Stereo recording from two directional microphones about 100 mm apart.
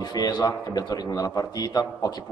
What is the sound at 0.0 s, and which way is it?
A man's voice, 45° left (ahead or behind).